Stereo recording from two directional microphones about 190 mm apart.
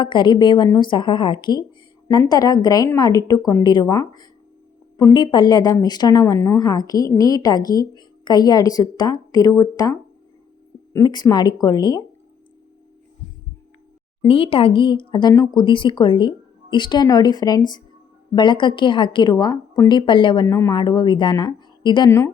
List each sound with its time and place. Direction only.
0.0 s a woman's voice: 25° left (ahead or behind)
10.9 s a woman's voice: 20° left (ahead or behind)
14.3 s a woman's voice: 30° left (ahead or behind)